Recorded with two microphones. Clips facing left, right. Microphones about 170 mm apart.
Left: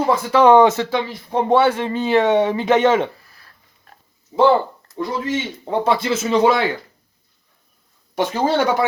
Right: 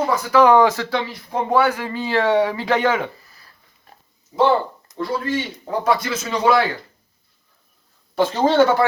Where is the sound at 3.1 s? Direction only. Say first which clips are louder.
Right 1 dB; centre (ahead or behind).